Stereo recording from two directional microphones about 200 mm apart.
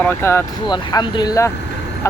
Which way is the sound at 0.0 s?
10° left (ahead or behind).